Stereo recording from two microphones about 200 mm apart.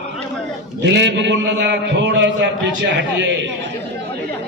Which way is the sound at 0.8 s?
60° right (ahead or behind).